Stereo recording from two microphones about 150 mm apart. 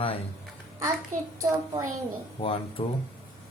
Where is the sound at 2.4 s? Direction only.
40° left (ahead or behind).